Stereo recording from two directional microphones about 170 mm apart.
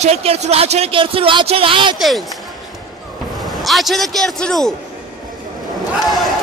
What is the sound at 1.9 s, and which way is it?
Speech, centre (ahead or behind).